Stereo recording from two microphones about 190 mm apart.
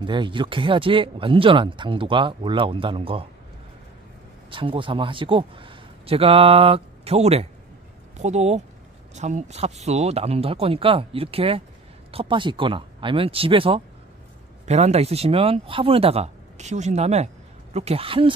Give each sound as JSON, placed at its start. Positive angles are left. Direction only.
{"t": 0.0, "sound": "speech", "side_deg": -25}
{"t": 4.5, "sound": "a man's voice", "side_deg": -25}